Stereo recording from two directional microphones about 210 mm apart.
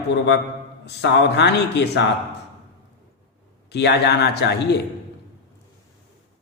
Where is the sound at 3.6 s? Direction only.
55° left (ahead or behind).